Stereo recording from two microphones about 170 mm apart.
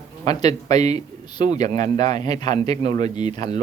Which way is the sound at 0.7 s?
40° right (ahead or behind).